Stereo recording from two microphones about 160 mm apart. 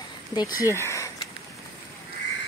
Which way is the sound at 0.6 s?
15° left (ahead or behind).